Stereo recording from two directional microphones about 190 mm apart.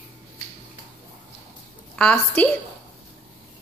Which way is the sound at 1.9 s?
10° left (ahead or behind).